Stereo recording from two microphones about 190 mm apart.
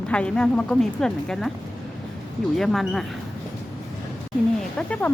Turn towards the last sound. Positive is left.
turn(degrees=5)  # may be behind; listen again after turning